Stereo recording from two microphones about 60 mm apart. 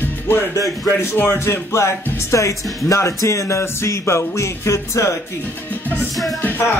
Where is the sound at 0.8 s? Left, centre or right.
Left.